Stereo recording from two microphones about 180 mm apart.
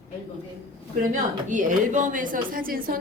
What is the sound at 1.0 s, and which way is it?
A woman's voice, 45° right (ahead or behind).